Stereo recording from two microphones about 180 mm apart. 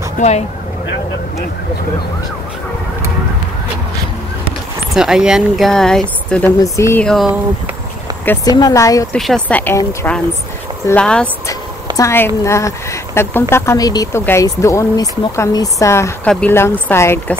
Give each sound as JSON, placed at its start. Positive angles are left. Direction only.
{"t": 0.2, "sound": "speech", "side_deg": 45}
{"t": 4.9, "sound": "speech", "side_deg": -5}
{"t": 6.6, "sound": "speech", "side_deg": 15}
{"t": 8.5, "sound": "speech", "side_deg": 20}
{"t": 9.1, "sound": "speech", "side_deg": 5}